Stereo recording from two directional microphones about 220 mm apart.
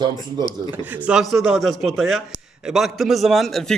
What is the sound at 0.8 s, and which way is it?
A man's voice, 5° right (ahead or behind).